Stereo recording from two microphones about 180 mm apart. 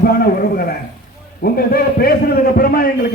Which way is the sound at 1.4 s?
55° left (ahead or behind).